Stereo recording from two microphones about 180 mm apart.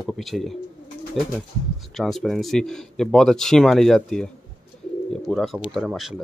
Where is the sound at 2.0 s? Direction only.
Centre (ahead or behind).